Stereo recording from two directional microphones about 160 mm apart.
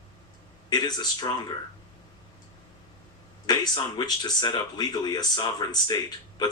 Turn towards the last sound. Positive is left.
turn(degrees=25)  # may be behind; listen again after turning